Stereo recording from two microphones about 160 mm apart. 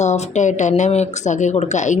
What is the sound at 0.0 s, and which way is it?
Speech, 45° left (ahead or behind).